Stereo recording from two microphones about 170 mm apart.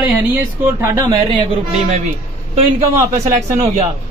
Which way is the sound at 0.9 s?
20° right (ahead or behind).